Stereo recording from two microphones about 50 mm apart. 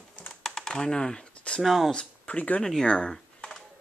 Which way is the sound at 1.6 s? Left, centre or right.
Centre.